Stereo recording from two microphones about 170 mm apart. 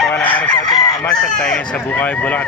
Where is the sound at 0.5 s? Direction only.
25° left (ahead or behind).